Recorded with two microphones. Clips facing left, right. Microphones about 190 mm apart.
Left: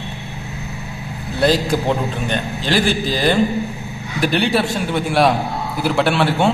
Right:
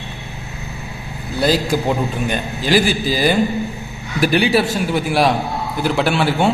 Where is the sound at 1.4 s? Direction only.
5° right (ahead or behind).